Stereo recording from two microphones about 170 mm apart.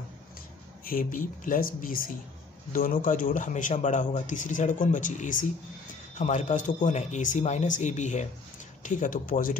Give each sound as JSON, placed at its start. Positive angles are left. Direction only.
{"t": 0.8, "sound": "speech", "side_deg": 55}